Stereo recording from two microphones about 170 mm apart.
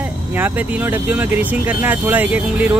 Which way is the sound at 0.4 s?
10° right (ahead or behind).